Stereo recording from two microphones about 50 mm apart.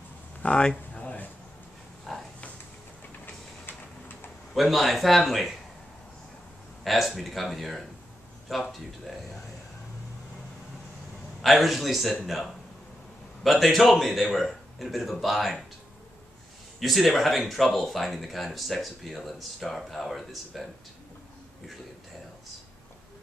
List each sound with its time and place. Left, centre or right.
0.4 s a sound: left
2.1 s a sound: centre
4.6 s speech: centre
6.8 s speech: centre
11.4 s speech: centre
16.8 s speech: centre